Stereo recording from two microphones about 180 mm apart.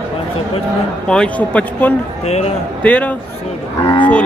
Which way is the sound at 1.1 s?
5° left (ahead or behind).